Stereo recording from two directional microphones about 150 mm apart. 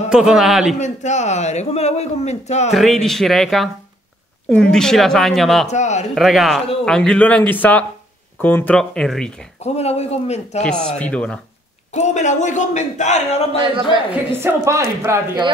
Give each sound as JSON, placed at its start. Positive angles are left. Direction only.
{"t": 0.1, "sound": "speech", "side_deg": -5}
{"t": 0.7, "sound": "a man's voice", "side_deg": 50}
{"t": 2.7, "sound": "speech", "side_deg": 0}
{"t": 5.7, "sound": "a man's voice", "side_deg": 50}
{"t": 6.1, "sound": "speech", "side_deg": 0}
{"t": 9.6, "sound": "a man's voice", "side_deg": 45}
{"t": 10.6, "sound": "speech", "side_deg": 5}
{"t": 11.9, "sound": "a man's voice", "side_deg": 50}
{"t": 14.1, "sound": "a woman's voice", "side_deg": -15}